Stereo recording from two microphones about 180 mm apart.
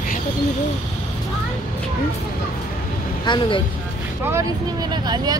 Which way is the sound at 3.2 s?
25° left (ahead or behind).